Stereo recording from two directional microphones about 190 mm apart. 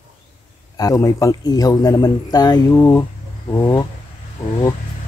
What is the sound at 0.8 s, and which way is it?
Speech, 15° left (ahead or behind).